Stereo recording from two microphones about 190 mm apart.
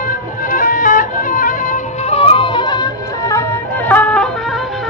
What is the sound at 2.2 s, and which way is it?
Music, 30° left (ahead or behind).